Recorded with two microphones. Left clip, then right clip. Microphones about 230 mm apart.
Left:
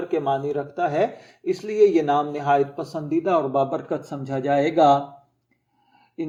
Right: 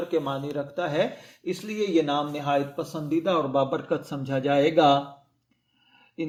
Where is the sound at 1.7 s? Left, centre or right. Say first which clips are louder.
Left 7 dB; right.